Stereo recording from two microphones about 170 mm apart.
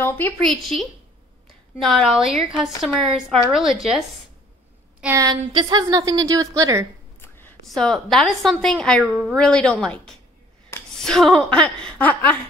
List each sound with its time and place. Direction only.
0.0 s a woman's voice: 10° left (ahead or behind)
5.0 s a woman's voice: 20° right (ahead or behind)
7.2 s a sound: 15° left (ahead or behind)
7.6 s a woman's voice: centre (ahead or behind)
9.0 s speech: 5° right (ahead or behind)
9.4 s a woman's voice: 5° left (ahead or behind)